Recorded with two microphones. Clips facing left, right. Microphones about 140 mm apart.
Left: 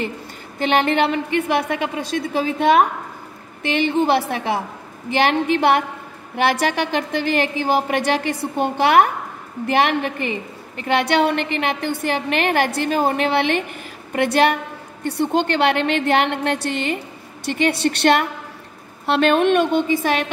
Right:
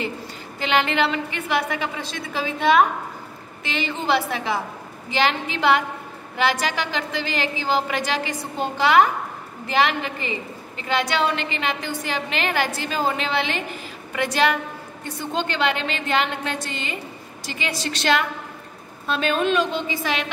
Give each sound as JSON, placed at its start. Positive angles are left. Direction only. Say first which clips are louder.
{"t": 0.6, "sound": "a woman's voice", "louder": "left 4 dB", "side_deg": 55}